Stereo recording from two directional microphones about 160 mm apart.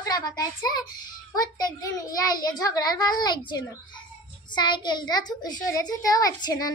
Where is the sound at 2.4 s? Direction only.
25° left (ahead or behind).